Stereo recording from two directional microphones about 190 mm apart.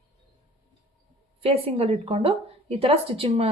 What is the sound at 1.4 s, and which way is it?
Speech, 30° right (ahead or behind).